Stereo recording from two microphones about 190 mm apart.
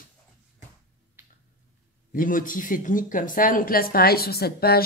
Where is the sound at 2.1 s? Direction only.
45° left (ahead or behind).